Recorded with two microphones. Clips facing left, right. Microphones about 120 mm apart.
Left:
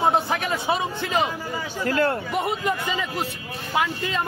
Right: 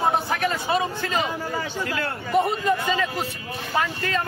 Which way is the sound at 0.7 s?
20° left (ahead or behind).